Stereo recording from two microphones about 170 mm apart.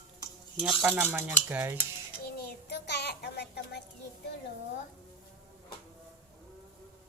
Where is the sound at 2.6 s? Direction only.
75° left (ahead or behind).